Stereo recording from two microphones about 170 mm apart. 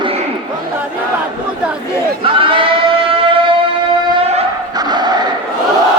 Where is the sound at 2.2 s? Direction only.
30° right (ahead or behind).